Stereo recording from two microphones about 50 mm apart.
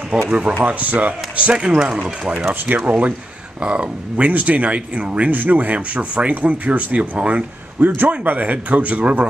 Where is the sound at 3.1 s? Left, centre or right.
Right.